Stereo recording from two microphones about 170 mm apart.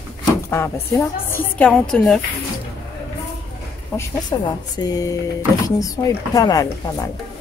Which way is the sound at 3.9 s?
25° left (ahead or behind).